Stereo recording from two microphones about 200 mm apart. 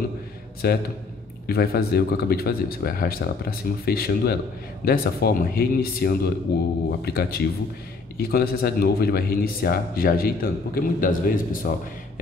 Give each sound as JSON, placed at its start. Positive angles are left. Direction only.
{"t": 0.6, "sound": "a man's voice", "side_deg": 50}